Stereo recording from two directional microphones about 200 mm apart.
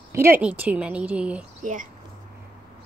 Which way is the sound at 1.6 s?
40° right (ahead or behind).